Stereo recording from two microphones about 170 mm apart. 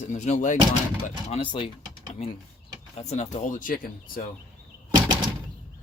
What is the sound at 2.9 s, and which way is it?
Speech, 40° left (ahead or behind).